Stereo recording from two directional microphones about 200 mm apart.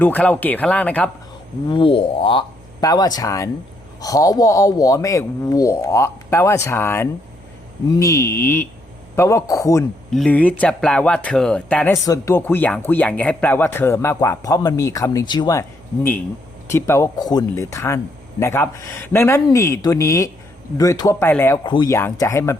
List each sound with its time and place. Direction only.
0.0 s speech: 10° left (ahead or behind)
1.7 s a sound: 25° left (ahead or behind)
2.8 s speech: 20° left (ahead or behind)
10.1 s speech: 5° left (ahead or behind); by 15.6 s 20° left (ahead or behind)
16.7 s speech: 15° left (ahead or behind)